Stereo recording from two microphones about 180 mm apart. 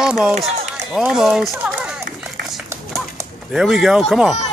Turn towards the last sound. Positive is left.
turn(degrees=0)  # may be behind; listen again after turning